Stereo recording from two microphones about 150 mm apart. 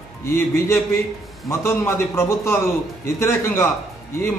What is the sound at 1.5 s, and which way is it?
A man's voice, 15° left (ahead or behind).